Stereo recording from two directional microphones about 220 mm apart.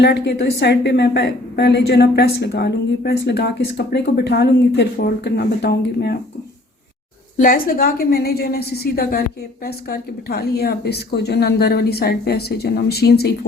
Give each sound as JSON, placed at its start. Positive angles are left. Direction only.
{"t": 0.0, "sound": "a woman's voice", "side_deg": 50}
{"t": 7.3, "sound": "a woman's voice", "side_deg": 40}